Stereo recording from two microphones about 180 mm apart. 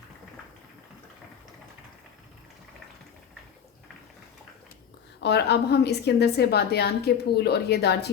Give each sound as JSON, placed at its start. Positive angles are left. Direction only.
{"t": 5.2, "sound": "a woman's voice", "side_deg": 65}